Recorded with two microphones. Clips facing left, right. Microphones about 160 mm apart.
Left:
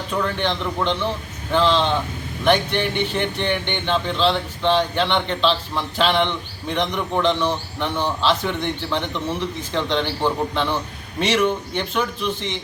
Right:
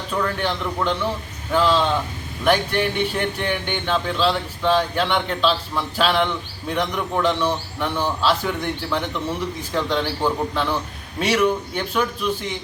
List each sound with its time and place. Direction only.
0.1 s speech: centre (ahead or behind)